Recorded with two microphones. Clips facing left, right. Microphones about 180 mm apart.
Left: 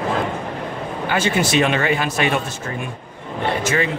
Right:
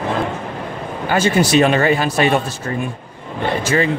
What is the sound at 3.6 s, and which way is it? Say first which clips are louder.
Speech: right 4 dB; 35° right (ahead or behind).